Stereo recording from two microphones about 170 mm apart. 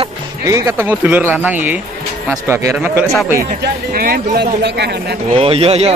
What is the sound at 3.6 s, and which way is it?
Speech, 60° right (ahead or behind).